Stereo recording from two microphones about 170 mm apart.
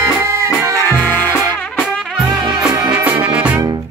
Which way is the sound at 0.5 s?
15° left (ahead or behind).